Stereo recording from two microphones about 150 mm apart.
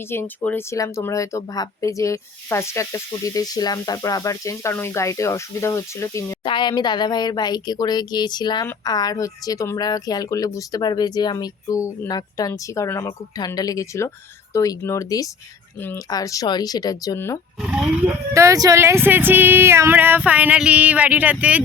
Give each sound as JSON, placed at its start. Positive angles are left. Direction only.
{"t": 0.1, "sound": "speech", "side_deg": 15}
{"t": 6.4, "sound": "speech", "side_deg": 30}
{"t": 17.6, "sound": "speech", "side_deg": -5}
{"t": 18.3, "sound": "speech", "side_deg": -20}